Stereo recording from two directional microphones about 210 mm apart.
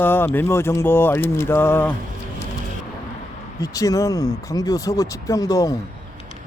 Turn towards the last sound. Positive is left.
turn(degrees=15)  # may be behind; listen again after turning